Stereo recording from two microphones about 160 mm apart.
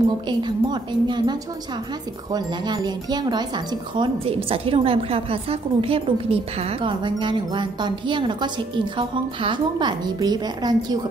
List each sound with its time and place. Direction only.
0.3 s speech: 30° right (ahead or behind)
2.3 s speech: 25° right (ahead or behind)